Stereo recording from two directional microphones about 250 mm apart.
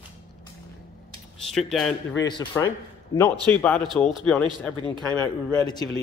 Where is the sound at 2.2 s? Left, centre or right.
Left.